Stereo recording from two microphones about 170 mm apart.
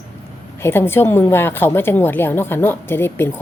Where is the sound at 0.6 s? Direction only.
15° left (ahead or behind).